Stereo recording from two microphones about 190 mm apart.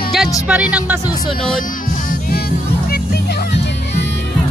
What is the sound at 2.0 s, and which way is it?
Music, 45° left (ahead or behind).